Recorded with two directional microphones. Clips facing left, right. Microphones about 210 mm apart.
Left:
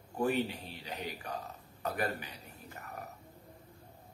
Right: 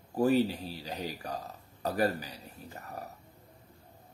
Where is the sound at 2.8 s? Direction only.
35° right (ahead or behind).